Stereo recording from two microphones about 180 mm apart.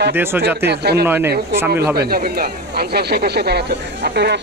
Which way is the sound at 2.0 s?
60° right (ahead or behind).